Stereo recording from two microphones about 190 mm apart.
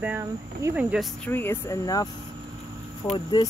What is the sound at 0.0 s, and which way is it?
Speech, 10° right (ahead or behind).